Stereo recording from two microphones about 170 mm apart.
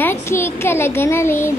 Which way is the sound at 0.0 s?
15° left (ahead or behind).